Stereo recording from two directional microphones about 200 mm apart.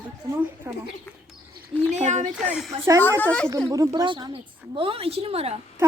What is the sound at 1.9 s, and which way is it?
Speech, 35° right (ahead or behind).